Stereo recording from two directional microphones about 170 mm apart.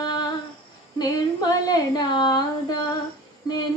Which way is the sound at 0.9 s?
25° left (ahead or behind).